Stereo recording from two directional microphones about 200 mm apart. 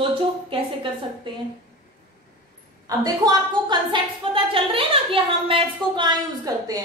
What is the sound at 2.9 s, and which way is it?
A woman's voice, 20° right (ahead or behind).